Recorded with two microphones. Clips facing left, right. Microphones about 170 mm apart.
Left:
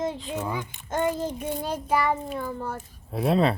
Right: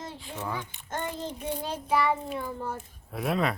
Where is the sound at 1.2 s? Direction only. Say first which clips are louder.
Left 4 dB; 45° left (ahead or behind).